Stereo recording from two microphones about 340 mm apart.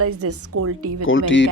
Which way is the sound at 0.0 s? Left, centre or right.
Right.